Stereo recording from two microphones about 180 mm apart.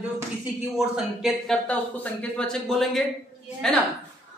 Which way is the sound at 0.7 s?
Centre (ahead or behind).